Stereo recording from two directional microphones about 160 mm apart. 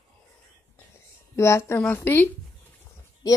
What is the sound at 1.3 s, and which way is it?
A woman's voice, 20° left (ahead or behind).